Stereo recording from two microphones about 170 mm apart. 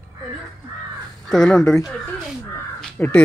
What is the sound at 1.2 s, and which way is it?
Speech, 5° left (ahead or behind).